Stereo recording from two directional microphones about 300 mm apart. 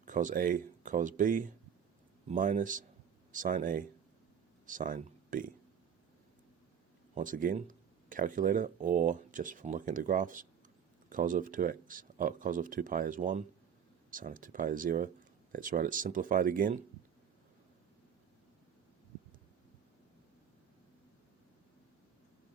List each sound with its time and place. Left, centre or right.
0.0 s speech: right
7.1 s speech: right